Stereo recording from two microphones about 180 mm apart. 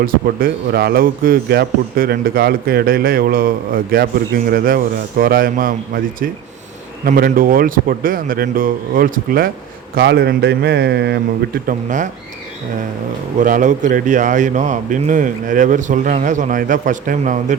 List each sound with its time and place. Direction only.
0.0 s speech: 55° right (ahead or behind)
9.9 s a man's voice: 65° right (ahead or behind); by 12.0 s 50° right (ahead or behind)
13.4 s speech: 45° right (ahead or behind)